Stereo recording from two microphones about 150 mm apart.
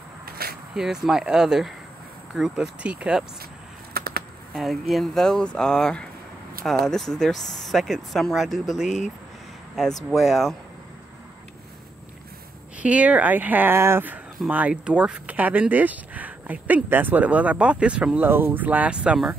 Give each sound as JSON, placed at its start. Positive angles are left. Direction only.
{"t": 0.2, "sound": "a sound", "side_deg": -90}
{"t": 0.7, "sound": "speech", "side_deg": -5}
{"t": 3.9, "sound": "a sound", "side_deg": -90}
{"t": 4.6, "sound": "speech", "side_deg": 0}
{"t": 8.8, "sound": "speech", "side_deg": 50}
{"t": 10.1, "sound": "speech", "side_deg": 0}
{"t": 12.7, "sound": "speech", "side_deg": -10}